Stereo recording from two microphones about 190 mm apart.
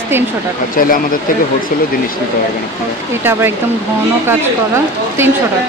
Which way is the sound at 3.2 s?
10° right (ahead or behind).